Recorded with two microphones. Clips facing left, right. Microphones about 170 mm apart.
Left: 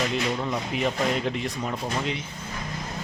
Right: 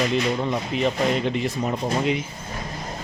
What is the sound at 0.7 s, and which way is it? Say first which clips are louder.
Speech: right 3 dB; 10° left (ahead or behind).